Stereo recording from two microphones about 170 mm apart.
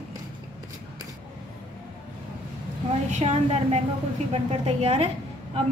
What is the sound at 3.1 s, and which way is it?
A woman's voice, 40° right (ahead or behind).